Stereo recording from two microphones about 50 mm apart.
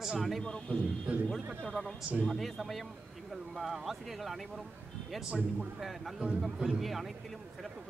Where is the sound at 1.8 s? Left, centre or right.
Centre.